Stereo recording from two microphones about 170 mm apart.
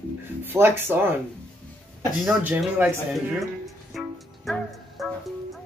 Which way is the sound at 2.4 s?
10° right (ahead or behind).